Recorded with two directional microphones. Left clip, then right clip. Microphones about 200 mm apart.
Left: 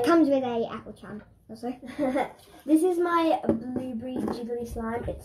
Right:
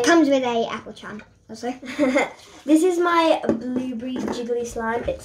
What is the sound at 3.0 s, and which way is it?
Speech, 15° right (ahead or behind).